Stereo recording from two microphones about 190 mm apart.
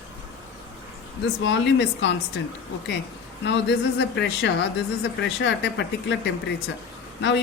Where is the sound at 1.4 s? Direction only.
70° left (ahead or behind).